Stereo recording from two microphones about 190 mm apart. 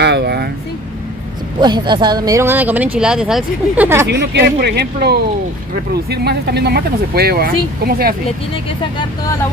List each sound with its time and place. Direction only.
0.0 s vehicle: 60° right (ahead or behind)
1.6 s speech: 25° right (ahead or behind)
4.1 s speech: 65° right (ahead or behind)